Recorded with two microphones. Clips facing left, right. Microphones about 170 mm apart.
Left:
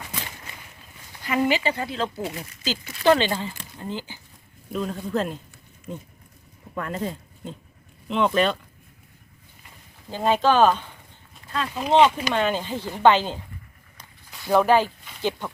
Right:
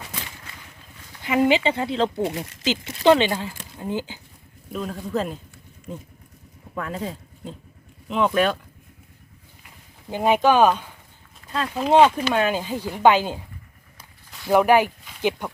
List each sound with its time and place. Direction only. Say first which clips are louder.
1.2 s speech: right 3 dB; 20° right (ahead or behind)
4.7 s speech: left 1 dB; centre (ahead or behind)
10.1 s speech: right 2 dB; 15° right (ahead or behind)
14.3 s a sound: right 2 dB; centre (ahead or behind)
14.5 s speech: right 2 dB; 15° right (ahead or behind)